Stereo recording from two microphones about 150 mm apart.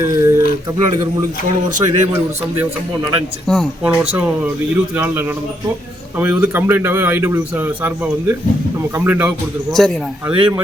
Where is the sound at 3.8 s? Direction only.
10° right (ahead or behind).